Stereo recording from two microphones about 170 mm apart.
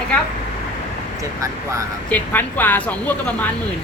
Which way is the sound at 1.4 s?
20° right (ahead or behind).